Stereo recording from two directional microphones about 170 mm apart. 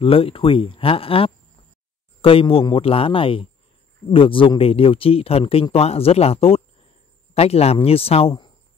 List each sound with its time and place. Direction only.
0.0 s speech: 35° left (ahead or behind)